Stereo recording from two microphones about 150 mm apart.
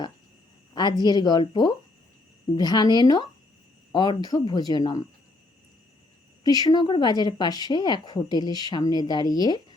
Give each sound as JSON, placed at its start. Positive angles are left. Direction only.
{"t": 0.7, "sound": "speech", "side_deg": 30}
{"t": 6.4, "sound": "speech", "side_deg": 25}